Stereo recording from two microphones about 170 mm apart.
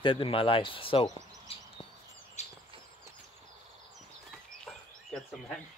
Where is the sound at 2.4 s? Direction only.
40° left (ahead or behind).